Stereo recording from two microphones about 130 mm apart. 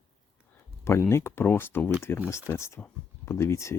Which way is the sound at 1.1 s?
20° left (ahead or behind).